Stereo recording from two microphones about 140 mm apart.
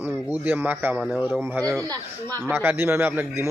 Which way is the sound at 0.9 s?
Centre (ahead or behind).